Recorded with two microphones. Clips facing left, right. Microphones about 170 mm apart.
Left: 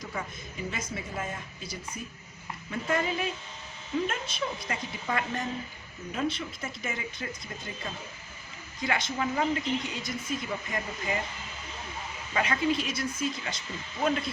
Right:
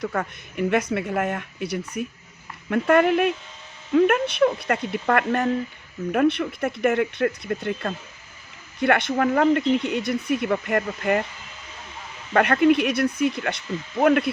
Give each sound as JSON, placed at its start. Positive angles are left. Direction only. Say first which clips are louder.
{"t": 0.0, "sound": "speech", "louder": "right 10 dB", "side_deg": -65}
{"t": 12.3, "sound": "speech", "louder": "right 10 dB", "side_deg": -65}